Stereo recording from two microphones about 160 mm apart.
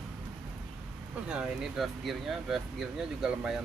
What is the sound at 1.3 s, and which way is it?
Speech, 5° right (ahead or behind).